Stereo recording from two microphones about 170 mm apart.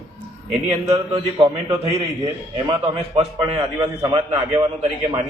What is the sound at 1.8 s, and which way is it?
A man's voice, 35° right (ahead or behind).